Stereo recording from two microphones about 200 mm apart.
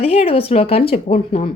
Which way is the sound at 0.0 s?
30° left (ahead or behind).